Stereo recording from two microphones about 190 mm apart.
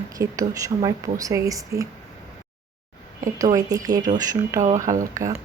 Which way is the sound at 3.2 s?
20° right (ahead or behind).